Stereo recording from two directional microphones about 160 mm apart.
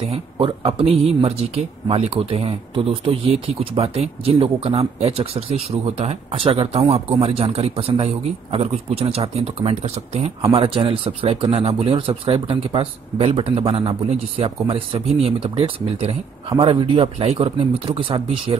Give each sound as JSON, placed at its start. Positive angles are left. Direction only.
{"t": 0.1, "sound": "speech", "side_deg": -35}